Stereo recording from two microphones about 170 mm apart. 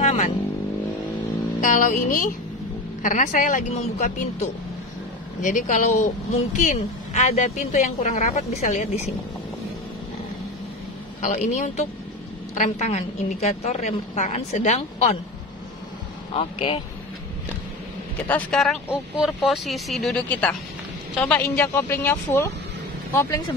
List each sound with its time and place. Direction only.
0.0 s vehicle: 40° left (ahead or behind)
1.6 s speech: 50° left (ahead or behind)
11.1 s a woman's voice: 45° left (ahead or behind)
16.3 s a woman's voice: 35° left (ahead or behind)
18.2 s speech: 5° left (ahead or behind)